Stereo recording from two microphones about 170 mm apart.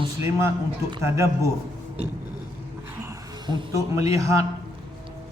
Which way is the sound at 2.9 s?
20° right (ahead or behind).